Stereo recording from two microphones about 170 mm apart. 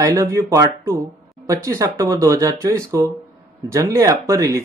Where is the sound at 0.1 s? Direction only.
20° right (ahead or behind).